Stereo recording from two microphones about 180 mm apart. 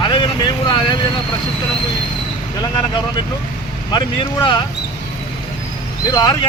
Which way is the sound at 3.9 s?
25° left (ahead or behind).